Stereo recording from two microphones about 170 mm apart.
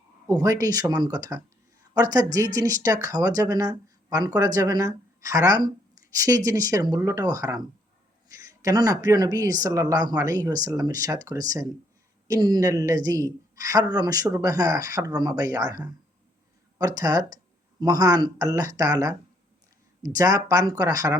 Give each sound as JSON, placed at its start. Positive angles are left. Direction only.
{"t": 0.3, "sound": "speech", "side_deg": -20}